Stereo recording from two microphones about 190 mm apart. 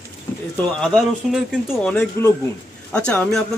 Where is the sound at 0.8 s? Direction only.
Centre (ahead or behind).